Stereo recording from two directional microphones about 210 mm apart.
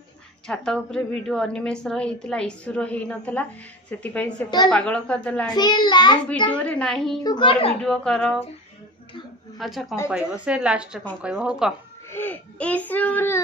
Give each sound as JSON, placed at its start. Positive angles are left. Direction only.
{"t": 0.5, "sound": "a woman's voice", "side_deg": 5}
{"t": 5.5, "sound": "a child's voice", "side_deg": 20}
{"t": 6.5, "sound": "a woman's voice", "side_deg": 5}
{"t": 7.2, "sound": "a child's voice", "side_deg": 25}
{"t": 7.8, "sound": "a woman's voice", "side_deg": 5}
{"t": 9.6, "sound": "a woman's voice", "side_deg": 0}
{"t": 12.1, "sound": "a sound", "side_deg": 10}